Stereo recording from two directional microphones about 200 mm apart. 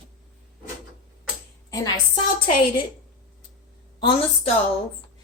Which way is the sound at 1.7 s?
20° left (ahead or behind).